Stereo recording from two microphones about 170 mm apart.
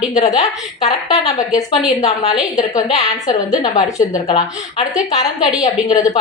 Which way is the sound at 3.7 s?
45° left (ahead or behind).